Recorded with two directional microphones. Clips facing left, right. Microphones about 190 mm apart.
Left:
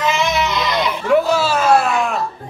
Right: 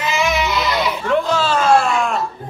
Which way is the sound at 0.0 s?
5° right (ahead or behind).